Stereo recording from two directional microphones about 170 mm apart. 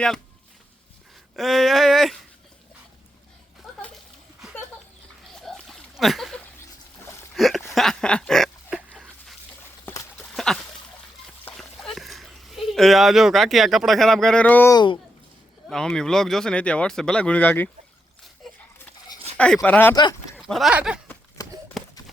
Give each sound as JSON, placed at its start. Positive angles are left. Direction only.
{"t": 1.4, "sound": "speech", "side_deg": 0}
{"t": 3.8, "sound": "a sound", "side_deg": 5}
{"t": 5.3, "sound": "splash", "side_deg": 0}
{"t": 7.3, "sound": "a sound", "side_deg": 0}
{"t": 7.7, "sound": "dog", "side_deg": 0}
{"t": 10.3, "sound": "a sound", "side_deg": 5}
{"t": 15.7, "sound": "speech", "side_deg": 5}
{"t": 19.6, "sound": "speech", "side_deg": 10}
{"t": 20.4, "sound": "speech", "side_deg": 0}
{"t": 21.4, "sound": "horse", "side_deg": 20}
{"t": 21.8, "sound": "clip-clop", "side_deg": 0}